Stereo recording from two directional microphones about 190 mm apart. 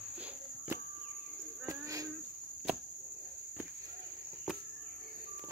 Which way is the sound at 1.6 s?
20° right (ahead or behind).